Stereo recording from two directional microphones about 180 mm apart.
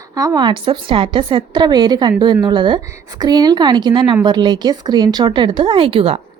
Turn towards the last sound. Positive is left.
turn(degrees=-30)  # may be behind; listen again after turning